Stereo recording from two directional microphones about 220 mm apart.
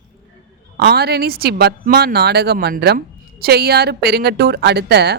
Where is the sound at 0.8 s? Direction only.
45° right (ahead or behind).